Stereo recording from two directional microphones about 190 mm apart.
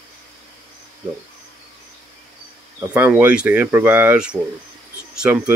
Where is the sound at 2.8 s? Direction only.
10° right (ahead or behind).